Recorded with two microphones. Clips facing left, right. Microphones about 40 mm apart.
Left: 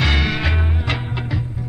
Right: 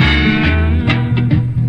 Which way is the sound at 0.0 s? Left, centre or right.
Right.